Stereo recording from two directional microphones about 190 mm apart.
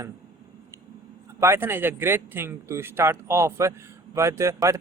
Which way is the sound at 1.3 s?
15° right (ahead or behind).